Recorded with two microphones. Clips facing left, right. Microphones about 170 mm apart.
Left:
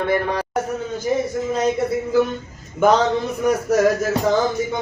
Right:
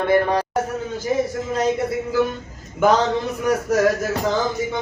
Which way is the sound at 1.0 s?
Centre (ahead or behind).